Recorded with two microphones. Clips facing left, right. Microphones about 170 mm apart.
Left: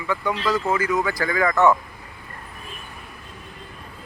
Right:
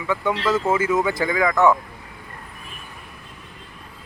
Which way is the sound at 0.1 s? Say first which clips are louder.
Right 2 dB; 20° right (ahead or behind).